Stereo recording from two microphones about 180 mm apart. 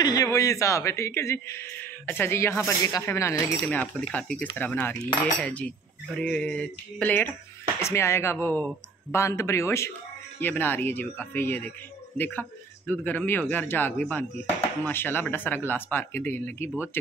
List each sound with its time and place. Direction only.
0.0 s speech: 20° left (ahead or behind)